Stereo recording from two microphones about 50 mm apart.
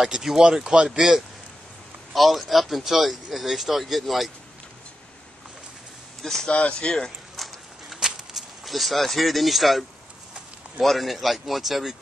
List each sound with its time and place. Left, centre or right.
0.0 s speech: centre
6.2 s speech: centre
6.5 s speech: left
7.4 s a sound: centre
10.8 s speech: centre